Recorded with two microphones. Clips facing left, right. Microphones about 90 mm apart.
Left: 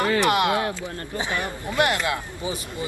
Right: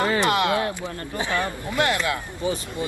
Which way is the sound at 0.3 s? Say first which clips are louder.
Even; 20° left (ahead or behind).